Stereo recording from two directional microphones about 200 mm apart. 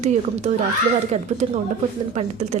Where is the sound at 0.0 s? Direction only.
35° right (ahead or behind).